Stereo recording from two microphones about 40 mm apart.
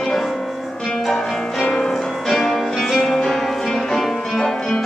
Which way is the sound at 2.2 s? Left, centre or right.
Centre.